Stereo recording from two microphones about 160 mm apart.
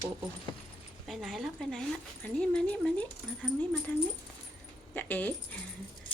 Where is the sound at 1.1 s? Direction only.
Centre (ahead or behind).